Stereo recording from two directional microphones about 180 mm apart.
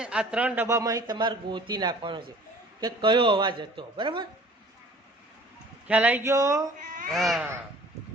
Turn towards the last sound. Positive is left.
turn(degrees=0)  # may be behind; listen again after turning